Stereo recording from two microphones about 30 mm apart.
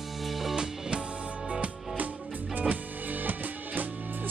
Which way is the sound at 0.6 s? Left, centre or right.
Right.